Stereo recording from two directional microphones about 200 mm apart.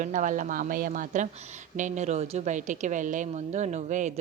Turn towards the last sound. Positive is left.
turn(degrees=-35)  # may be behind; listen again after turning